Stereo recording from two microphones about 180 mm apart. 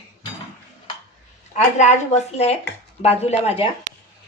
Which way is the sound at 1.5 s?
40° left (ahead or behind).